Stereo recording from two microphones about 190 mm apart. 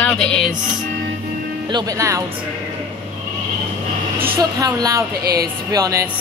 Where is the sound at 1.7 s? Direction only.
20° right (ahead or behind).